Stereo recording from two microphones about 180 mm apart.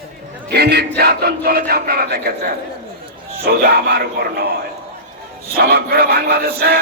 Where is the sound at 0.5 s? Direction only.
65° right (ahead or behind).